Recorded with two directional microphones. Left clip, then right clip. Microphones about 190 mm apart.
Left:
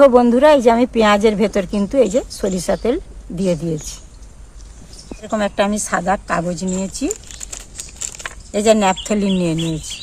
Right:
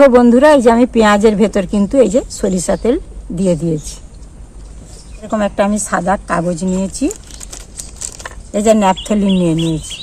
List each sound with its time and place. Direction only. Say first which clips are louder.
0.0 s speech: right 3 dB; 5° right (ahead or behind)
5.2 s speech: right 3 dB; 5° left (ahead or behind)
8.5 s speech: right 3 dB; centre (ahead or behind)
9.6 s speech: right 5 dB; 20° left (ahead or behind)